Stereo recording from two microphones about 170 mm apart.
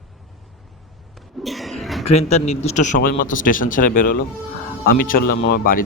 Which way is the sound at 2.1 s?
40° left (ahead or behind).